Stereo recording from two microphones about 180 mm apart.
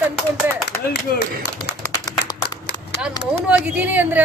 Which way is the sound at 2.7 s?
70° left (ahead or behind).